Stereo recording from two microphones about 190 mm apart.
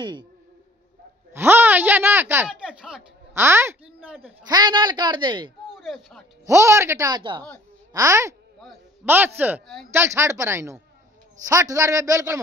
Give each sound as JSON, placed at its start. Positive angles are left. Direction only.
{"t": 0.0, "sound": "a woman's voice", "side_deg": -25}
{"t": 1.3, "sound": "speech", "side_deg": -10}
{"t": 3.4, "sound": "a woman's voice", "side_deg": -15}
{"t": 5.8, "sound": "speech", "side_deg": 0}
{"t": 6.4, "sound": "speech", "side_deg": -15}